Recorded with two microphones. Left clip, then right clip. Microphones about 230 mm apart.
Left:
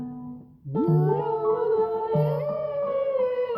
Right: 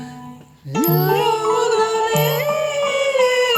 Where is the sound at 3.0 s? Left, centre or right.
Centre.